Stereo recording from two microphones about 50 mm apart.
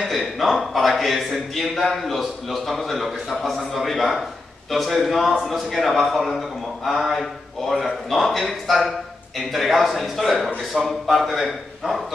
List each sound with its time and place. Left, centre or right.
0.0 s a man's voice: centre